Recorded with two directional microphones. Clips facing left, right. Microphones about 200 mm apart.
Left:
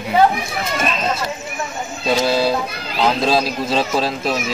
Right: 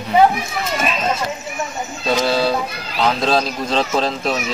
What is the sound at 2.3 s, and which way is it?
Speech, 10° left (ahead or behind).